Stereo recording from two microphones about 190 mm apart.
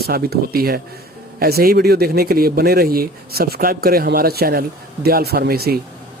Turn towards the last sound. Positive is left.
turn(degrees=-55)  # may be behind; listen again after turning